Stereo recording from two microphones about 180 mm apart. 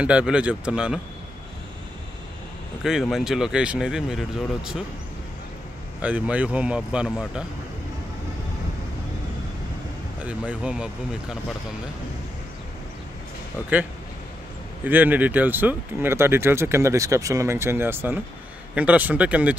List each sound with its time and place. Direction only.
0.0 s speech: 5° right (ahead or behind)
2.8 s speech: centre (ahead or behind)
5.9 s speech: 10° right (ahead or behind)
10.2 s speech: 5° right (ahead or behind)
14.9 s speech: 10° right (ahead or behind)